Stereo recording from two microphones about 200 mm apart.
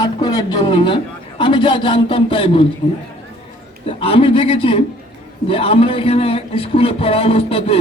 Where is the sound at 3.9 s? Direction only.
25° left (ahead or behind).